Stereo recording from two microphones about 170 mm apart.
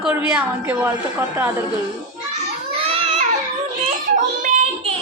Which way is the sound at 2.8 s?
35° right (ahead or behind).